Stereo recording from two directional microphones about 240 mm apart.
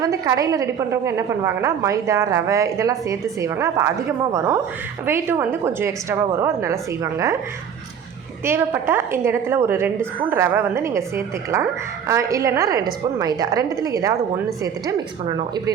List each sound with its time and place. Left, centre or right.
0.0 s a woman's voice: centre
8.4 s a woman's voice: centre
12.0 s a woman's voice: centre